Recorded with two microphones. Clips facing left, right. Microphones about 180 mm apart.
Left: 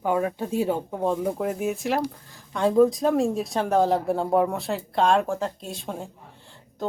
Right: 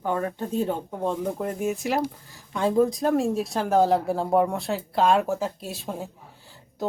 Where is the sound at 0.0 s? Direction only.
10° left (ahead or behind).